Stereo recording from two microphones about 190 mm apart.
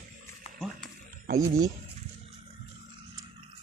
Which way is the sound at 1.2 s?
45° right (ahead or behind).